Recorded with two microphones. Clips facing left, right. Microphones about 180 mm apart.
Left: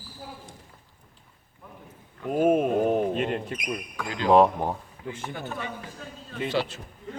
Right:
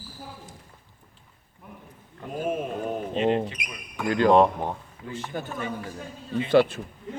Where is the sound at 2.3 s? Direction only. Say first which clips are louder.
Left 8 dB; 50° left (ahead or behind).